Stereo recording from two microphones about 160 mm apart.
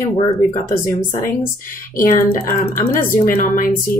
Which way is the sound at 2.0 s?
60° left (ahead or behind).